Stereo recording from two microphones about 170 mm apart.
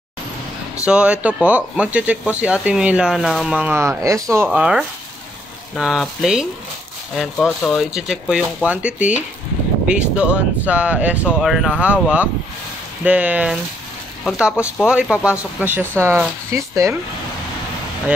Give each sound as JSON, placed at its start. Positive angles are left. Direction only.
{"t": 0.8, "sound": "speech", "side_deg": -5}
{"t": 4.5, "sound": "speech", "side_deg": -5}